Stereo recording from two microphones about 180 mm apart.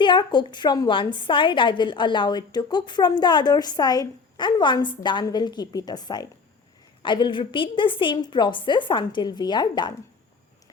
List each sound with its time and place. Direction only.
0.0 s a woman's voice: 25° left (ahead or behind)